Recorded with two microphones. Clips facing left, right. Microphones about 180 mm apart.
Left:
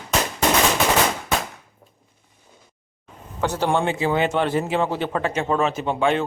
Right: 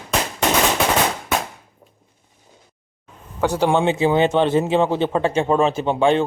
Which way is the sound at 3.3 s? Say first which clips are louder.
Right 4 dB; 10° right (ahead or behind).